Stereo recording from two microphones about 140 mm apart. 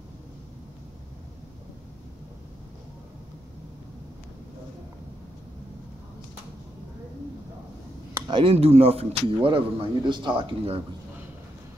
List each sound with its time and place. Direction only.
8.3 s a man's voice: 40° right (ahead or behind)